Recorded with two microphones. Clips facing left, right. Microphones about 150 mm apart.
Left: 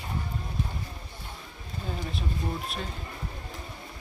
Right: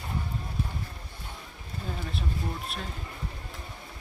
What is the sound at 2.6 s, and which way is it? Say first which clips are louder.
Speech: left 2 dB; centre (ahead or behind).